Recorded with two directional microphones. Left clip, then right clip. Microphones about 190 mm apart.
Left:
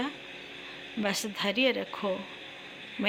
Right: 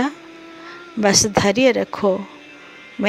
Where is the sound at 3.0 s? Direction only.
30° right (ahead or behind).